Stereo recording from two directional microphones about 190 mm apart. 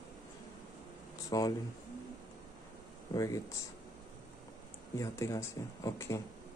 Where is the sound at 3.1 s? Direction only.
15° left (ahead or behind).